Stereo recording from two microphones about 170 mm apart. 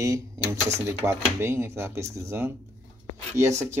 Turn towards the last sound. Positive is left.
turn(degrees=-15)  # may be behind; listen again after turning